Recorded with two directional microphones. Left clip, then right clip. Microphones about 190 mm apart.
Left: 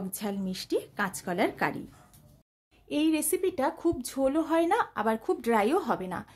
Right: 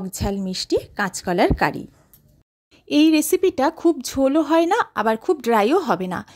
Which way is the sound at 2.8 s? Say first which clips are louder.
Right 11 dB; 45° right (ahead or behind).